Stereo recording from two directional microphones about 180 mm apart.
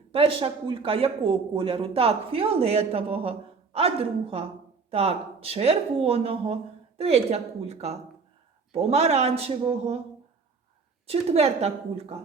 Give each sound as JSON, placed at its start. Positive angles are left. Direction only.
{"t": 0.1, "sound": "speech", "side_deg": -30}
{"t": 11.0, "sound": "speech", "side_deg": -35}